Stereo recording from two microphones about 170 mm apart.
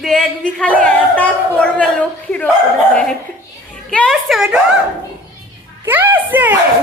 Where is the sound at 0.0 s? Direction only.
5° left (ahead or behind).